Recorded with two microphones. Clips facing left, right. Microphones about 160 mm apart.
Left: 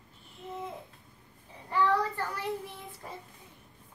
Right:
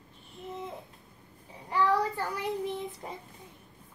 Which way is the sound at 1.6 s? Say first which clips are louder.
Right 1 dB; 15° right (ahead or behind).